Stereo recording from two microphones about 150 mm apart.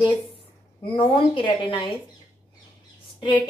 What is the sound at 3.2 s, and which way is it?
Speech, 35° left (ahead or behind).